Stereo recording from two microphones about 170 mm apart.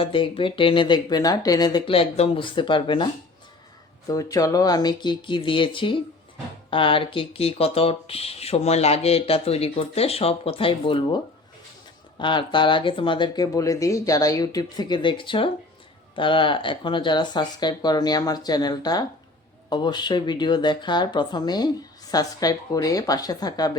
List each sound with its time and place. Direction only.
0.0 s speech: 30° left (ahead or behind)
4.1 s speech: 20° left (ahead or behind)
12.2 s speech: 30° left (ahead or behind)